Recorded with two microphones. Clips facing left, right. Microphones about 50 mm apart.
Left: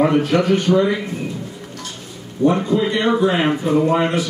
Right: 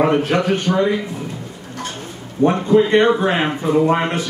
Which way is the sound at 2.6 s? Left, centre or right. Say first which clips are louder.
Right 5 dB; right.